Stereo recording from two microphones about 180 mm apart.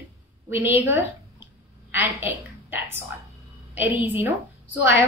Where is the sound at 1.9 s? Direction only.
10° right (ahead or behind).